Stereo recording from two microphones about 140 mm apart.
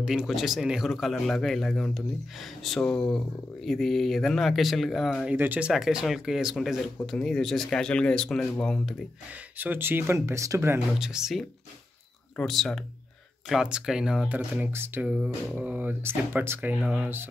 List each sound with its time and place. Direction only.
0.0 s speech: 5° right (ahead or behind)
5.3 s speech: 10° right (ahead or behind); by 8.9 s 5° left (ahead or behind)
9.6 s speech: 15° right (ahead or behind)
11.0 s speech: 5° right (ahead or behind)